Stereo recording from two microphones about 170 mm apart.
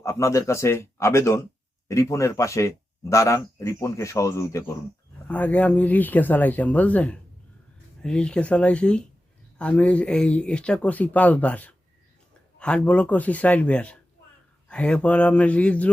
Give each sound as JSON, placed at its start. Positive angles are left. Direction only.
{"t": 0.0, "sound": "speech", "side_deg": 15}